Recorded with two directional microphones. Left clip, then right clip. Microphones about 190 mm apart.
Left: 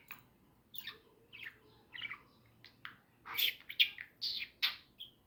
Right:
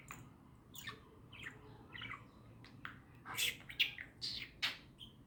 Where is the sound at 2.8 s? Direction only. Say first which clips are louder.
Even; 15° right (ahead or behind).